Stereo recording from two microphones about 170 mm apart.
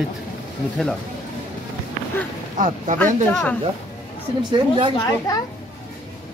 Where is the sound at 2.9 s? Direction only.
5° left (ahead or behind).